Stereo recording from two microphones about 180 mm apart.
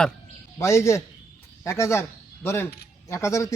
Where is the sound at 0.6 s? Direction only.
15° left (ahead or behind).